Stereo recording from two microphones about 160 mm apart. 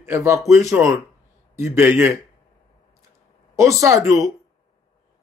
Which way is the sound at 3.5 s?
20° right (ahead or behind).